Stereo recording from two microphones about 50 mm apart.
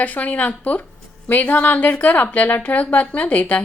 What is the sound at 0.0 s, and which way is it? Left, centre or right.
A woman's voice, left.